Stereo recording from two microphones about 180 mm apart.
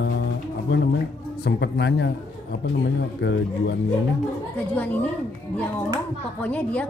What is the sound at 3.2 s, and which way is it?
Speech, 70° left (ahead or behind).